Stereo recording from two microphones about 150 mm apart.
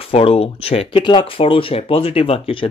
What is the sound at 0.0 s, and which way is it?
Speech, 40° left (ahead or behind).